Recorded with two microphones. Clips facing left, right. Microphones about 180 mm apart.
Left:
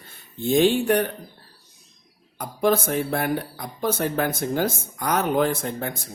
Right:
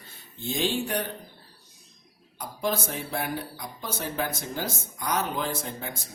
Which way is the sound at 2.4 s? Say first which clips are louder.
Left 8 dB; 55° left (ahead or behind).